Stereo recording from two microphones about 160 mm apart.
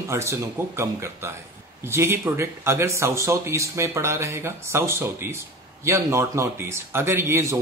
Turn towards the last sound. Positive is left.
turn(degrees=-20)  # may be behind; listen again after turning